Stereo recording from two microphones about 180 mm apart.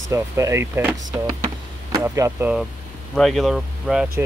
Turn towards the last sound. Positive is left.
turn(degrees=0)  # may be behind; listen again after turning